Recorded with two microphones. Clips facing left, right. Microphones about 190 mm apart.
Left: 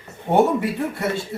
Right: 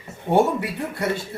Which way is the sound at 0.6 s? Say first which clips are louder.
Left 3 dB; 25° left (ahead or behind).